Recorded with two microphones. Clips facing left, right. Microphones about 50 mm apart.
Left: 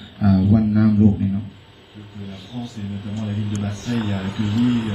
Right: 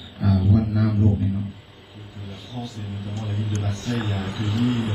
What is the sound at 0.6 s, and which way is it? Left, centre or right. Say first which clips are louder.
Speech: left 6 dB; left.